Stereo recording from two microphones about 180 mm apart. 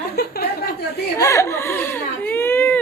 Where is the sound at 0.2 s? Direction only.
60° left (ahead or behind).